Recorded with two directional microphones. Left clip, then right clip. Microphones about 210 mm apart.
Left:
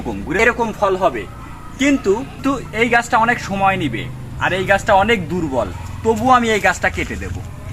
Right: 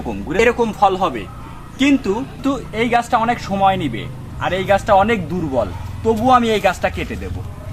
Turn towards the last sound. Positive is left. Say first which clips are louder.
# left 2 dB
turn(degrees=-20)  # may be behind; listen again after turning